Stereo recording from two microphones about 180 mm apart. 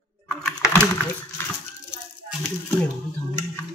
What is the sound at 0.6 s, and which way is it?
Computer keyboard, 10° left (ahead or behind).